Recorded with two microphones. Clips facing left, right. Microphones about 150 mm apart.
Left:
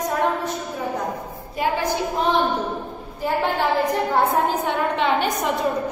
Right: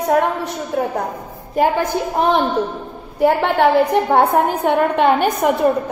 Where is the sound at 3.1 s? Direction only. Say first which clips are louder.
Right 8 dB; 65° right (ahead or behind).